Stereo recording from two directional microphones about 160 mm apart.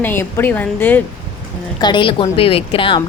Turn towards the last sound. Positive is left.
turn(degrees=30)  # may be behind; listen again after turning